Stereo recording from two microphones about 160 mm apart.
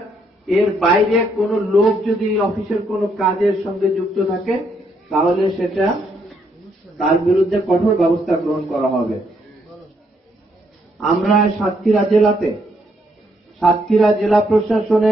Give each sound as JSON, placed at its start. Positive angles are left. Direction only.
{"t": 0.5, "sound": "a man's voice", "side_deg": 0}
{"t": 11.0, "sound": "a man's voice", "side_deg": 0}
{"t": 13.8, "sound": "a man's voice", "side_deg": 0}